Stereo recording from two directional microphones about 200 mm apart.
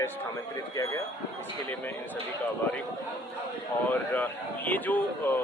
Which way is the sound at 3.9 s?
10° left (ahead or behind).